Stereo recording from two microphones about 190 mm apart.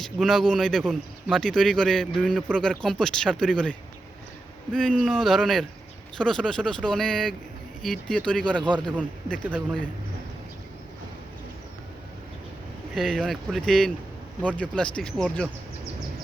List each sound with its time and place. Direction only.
0.0 s a man's voice: centre (ahead or behind)
8.6 s a man's voice: 25° right (ahead or behind)
9.0 s speech: 5° left (ahead or behind)
12.9 s a man's voice: centre (ahead or behind)